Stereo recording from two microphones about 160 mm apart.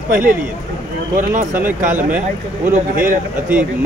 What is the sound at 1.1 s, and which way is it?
Speech, 50° right (ahead or behind).